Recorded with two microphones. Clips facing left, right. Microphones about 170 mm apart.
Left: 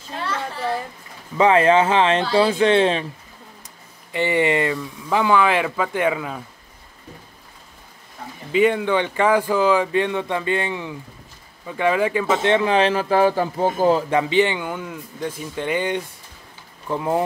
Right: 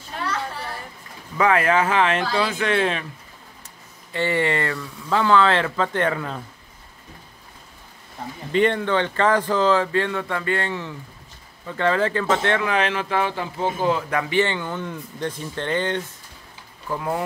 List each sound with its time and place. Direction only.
1.4 s speech: 25° left (ahead or behind)
4.1 s speech: 15° left (ahead or behind)
8.5 s speech: 5° left (ahead or behind); by 14.0 s 40° left (ahead or behind)
14.1 s speech: 20° left (ahead or behind)
16.9 s speech: 20° left (ahead or behind)